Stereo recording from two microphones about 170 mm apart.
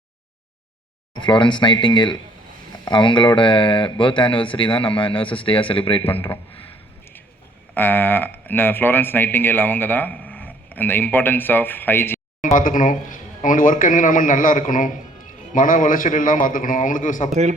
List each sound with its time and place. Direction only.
1.1 s speech: 25° left (ahead or behind)
7.7 s speech: 10° left (ahead or behind)
12.4 s speech: 50° left (ahead or behind)